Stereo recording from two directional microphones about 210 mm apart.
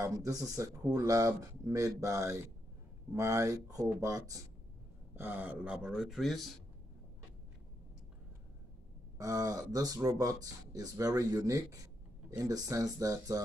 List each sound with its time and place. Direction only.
0.0 s speech: 15° right (ahead or behind); by 6.5 s centre (ahead or behind)
9.2 s speech: 15° right (ahead or behind)